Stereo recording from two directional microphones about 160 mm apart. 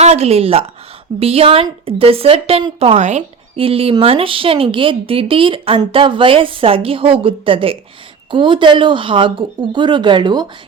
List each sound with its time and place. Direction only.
0.0 s speech: 40° right (ahead or behind)